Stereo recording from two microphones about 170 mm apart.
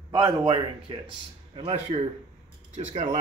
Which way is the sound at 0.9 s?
35° right (ahead or behind).